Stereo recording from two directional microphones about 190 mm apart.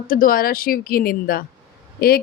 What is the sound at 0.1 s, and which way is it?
Speech, 50° left (ahead or behind).